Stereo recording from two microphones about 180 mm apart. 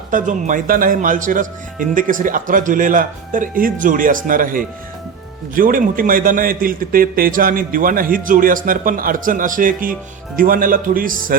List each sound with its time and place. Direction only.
0.1 s speech: 45° right (ahead or behind)